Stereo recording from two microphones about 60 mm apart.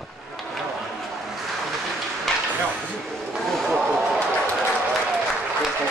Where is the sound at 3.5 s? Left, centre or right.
Centre.